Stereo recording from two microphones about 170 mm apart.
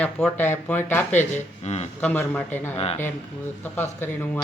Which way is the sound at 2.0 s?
10° left (ahead or behind).